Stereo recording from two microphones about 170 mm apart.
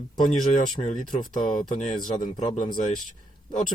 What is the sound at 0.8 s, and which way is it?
Speech, 45° left (ahead or behind).